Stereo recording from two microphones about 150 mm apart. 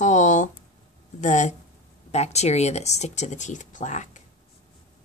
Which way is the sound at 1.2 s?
55° left (ahead or behind).